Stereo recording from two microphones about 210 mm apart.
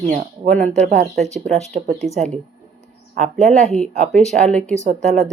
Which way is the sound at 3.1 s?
35° right (ahead or behind).